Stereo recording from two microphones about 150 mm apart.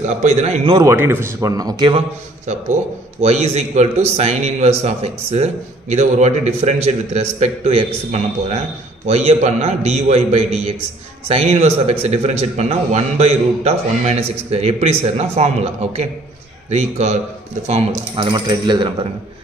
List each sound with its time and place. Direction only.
0.0 s a man's voice: 50° right (ahead or behind)
0.8 s speech: 15° right (ahead or behind); by 2.0 s 30° right (ahead or behind)
2.4 s a man's voice: 50° right (ahead or behind); by 18.9 s 30° right (ahead or behind)